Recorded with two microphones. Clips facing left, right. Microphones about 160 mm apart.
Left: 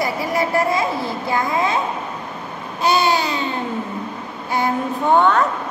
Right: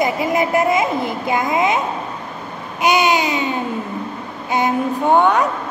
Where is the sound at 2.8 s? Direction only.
15° right (ahead or behind).